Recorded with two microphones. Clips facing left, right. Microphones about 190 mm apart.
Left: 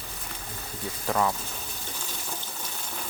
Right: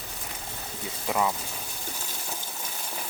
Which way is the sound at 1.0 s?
10° right (ahead or behind).